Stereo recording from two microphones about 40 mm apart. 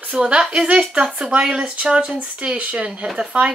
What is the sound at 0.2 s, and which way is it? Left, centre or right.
Speech, right.